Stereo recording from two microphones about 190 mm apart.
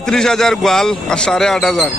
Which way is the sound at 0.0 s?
5° left (ahead or behind).